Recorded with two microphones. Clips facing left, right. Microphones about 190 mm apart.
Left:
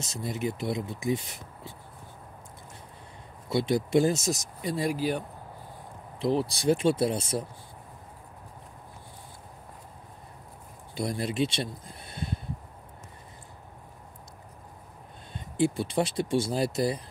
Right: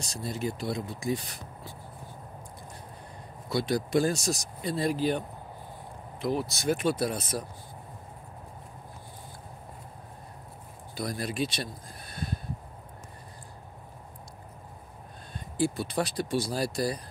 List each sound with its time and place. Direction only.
0.0 s speech: 20° left (ahead or behind)
3.4 s speech: 25° left (ahead or behind); by 5.2 s 10° left (ahead or behind)
6.1 s speech: 30° left (ahead or behind)
11.0 s speech: 25° left (ahead or behind)
15.3 s speech: 20° left (ahead or behind)